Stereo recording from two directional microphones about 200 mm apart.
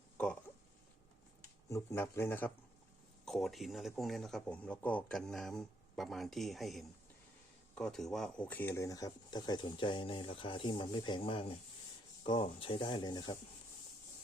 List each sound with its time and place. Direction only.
1.7 s speech: 15° left (ahead or behind)